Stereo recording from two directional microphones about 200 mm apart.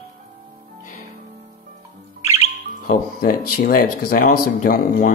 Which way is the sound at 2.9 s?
45° left (ahead or behind).